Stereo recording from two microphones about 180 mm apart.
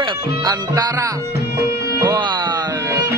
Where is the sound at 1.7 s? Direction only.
60° left (ahead or behind).